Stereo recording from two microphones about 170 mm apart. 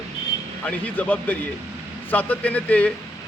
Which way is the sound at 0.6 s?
10° left (ahead or behind).